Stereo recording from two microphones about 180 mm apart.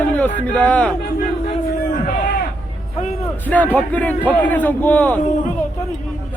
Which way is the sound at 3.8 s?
10° left (ahead or behind).